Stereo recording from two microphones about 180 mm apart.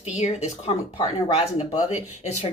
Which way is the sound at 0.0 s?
40° left (ahead or behind).